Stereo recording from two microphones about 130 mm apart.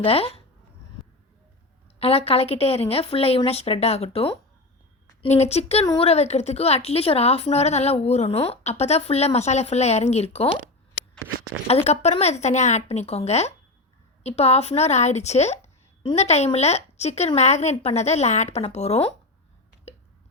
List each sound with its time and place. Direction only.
0.0 s speech: 50° left (ahead or behind)
2.0 s speech: 50° left (ahead or behind)
5.3 s a woman's voice: 55° left (ahead or behind)
11.9 s a woman's voice: 55° left (ahead or behind)